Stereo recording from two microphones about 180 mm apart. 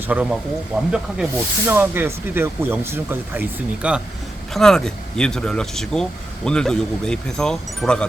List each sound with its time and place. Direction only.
0.1 s speech: 5° right (ahead or behind)